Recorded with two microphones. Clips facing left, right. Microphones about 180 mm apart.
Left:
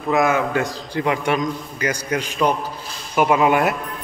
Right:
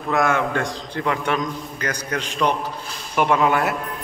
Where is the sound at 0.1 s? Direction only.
5° left (ahead or behind).